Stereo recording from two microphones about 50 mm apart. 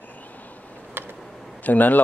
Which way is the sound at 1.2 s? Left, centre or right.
Centre.